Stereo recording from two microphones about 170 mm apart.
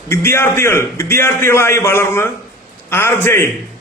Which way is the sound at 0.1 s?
15° left (ahead or behind).